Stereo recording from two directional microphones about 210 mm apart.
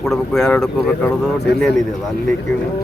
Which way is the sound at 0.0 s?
Centre (ahead or behind).